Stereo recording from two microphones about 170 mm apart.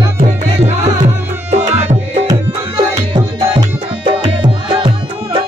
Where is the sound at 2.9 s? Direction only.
25° right (ahead or behind).